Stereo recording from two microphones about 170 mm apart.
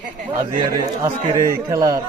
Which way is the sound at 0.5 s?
25° right (ahead or behind).